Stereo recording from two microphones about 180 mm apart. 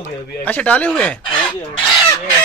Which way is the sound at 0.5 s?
10° left (ahead or behind).